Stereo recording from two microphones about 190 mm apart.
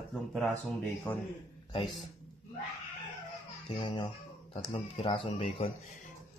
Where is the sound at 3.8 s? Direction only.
25° left (ahead or behind).